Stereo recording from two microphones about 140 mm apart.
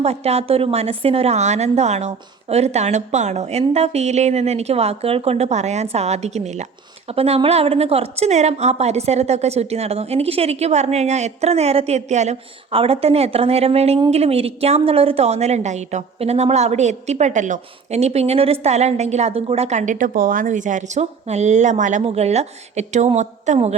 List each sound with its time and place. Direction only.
0.0 s a woman's voice: 50° right (ahead or behind)
22.0 s a woman's voice: 50° right (ahead or behind)